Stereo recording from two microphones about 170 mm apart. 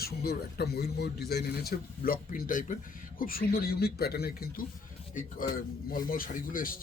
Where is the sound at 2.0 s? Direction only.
55° left (ahead or behind).